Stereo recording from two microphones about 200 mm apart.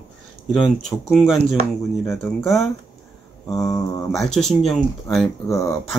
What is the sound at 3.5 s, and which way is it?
Mantra, 15° left (ahead or behind).